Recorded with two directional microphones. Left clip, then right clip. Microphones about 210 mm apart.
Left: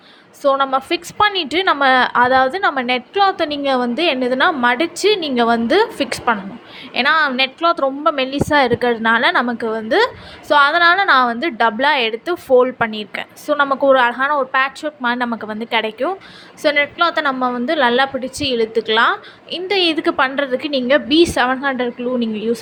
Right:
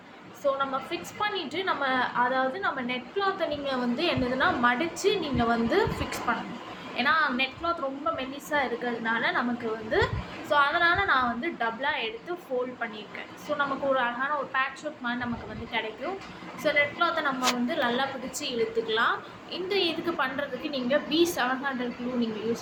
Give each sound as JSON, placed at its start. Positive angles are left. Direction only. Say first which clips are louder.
{"t": 0.4, "sound": "a woman's voice", "louder": "left 12 dB", "side_deg": 45}